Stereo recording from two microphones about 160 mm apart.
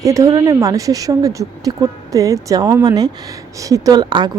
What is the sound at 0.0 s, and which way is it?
A woman's voice, 20° right (ahead or behind).